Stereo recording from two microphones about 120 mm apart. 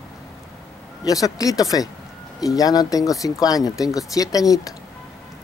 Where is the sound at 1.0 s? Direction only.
30° left (ahead or behind).